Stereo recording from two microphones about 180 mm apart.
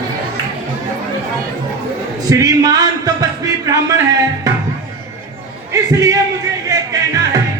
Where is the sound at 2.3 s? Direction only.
20° right (ahead or behind).